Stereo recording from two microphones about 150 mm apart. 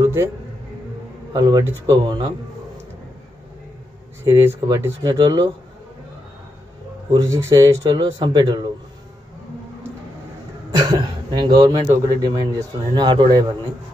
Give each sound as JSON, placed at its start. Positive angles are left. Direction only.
{"t": 0.0, "sound": "music", "side_deg": -15}
{"t": 1.3, "sound": "speech", "side_deg": -25}
{"t": 4.2, "sound": "speech", "side_deg": -15}
{"t": 7.1, "sound": "speech", "side_deg": -20}
{"t": 10.7, "sound": "speech", "side_deg": -30}